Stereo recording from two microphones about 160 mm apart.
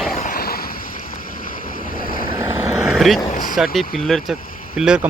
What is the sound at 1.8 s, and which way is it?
Vehicle, 65° left (ahead or behind).